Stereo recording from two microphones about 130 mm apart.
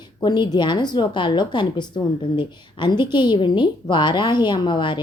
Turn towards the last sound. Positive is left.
turn(degrees=35)  # may be behind; listen again after turning